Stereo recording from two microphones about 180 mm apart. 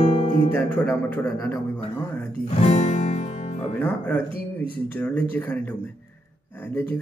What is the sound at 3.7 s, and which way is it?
Speech, 10° left (ahead or behind).